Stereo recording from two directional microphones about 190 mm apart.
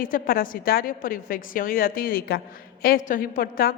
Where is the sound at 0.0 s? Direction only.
50° left (ahead or behind).